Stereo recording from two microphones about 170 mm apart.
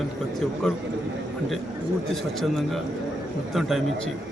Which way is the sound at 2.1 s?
Centre (ahead or behind).